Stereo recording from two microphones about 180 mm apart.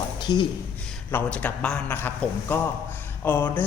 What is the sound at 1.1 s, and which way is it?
A man's voice, 10° left (ahead or behind).